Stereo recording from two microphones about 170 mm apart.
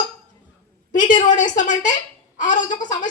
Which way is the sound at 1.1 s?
45° left (ahead or behind).